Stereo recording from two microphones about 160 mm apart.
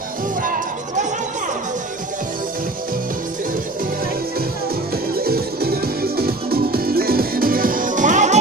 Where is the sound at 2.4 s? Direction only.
60° right (ahead or behind).